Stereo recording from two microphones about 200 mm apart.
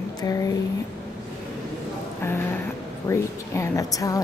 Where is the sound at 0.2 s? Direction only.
15° left (ahead or behind).